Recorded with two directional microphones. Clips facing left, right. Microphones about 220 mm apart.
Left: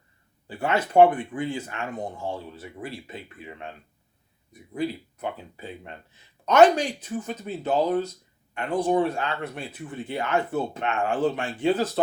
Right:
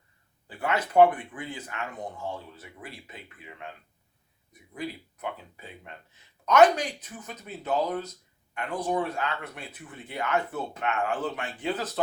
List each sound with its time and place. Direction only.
0.4 s speech: 30° left (ahead or behind)
4.7 s speech: 30° left (ahead or behind)